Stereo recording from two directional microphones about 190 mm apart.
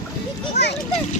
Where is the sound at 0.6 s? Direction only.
60° left (ahead or behind).